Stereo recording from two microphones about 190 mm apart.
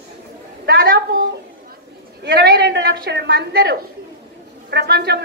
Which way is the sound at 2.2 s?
65° right (ahead or behind).